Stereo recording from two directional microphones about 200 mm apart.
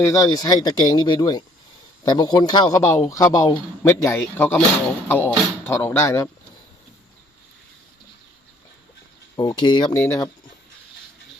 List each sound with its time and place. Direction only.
0.0 s speech: 15° left (ahead or behind)
9.3 s speech: 20° left (ahead or behind)